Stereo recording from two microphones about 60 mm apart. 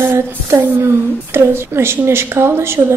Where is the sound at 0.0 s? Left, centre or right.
Right.